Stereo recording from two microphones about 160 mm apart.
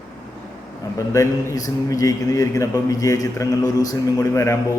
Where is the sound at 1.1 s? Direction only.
20° left (ahead or behind).